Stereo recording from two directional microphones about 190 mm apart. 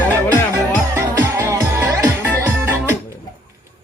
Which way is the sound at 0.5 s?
15° right (ahead or behind).